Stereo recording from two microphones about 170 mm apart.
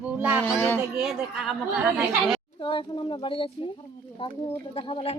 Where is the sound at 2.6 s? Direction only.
30° left (ahead or behind).